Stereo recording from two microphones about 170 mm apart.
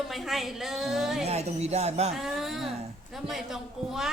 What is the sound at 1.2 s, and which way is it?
Speech, 40° right (ahead or behind).